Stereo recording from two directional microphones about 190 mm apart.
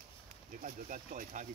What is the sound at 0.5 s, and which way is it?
Speech, 45° right (ahead or behind).